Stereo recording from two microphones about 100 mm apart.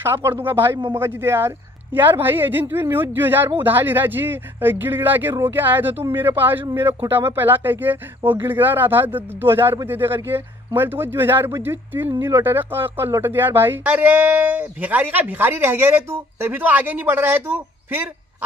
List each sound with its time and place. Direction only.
0.0 s speech: 25° right (ahead or behind)